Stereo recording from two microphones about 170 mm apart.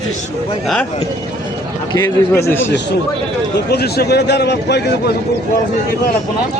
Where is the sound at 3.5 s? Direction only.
70° left (ahead or behind).